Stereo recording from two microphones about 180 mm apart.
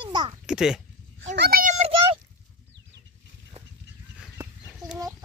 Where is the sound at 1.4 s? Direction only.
55° right (ahead or behind).